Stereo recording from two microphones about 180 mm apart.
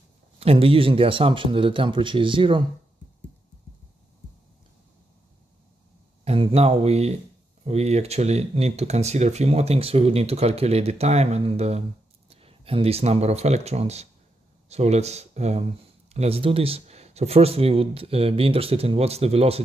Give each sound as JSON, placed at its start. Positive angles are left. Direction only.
{"t": 0.4, "sound": "speech", "side_deg": -30}
{"t": 6.2, "sound": "speech", "side_deg": -35}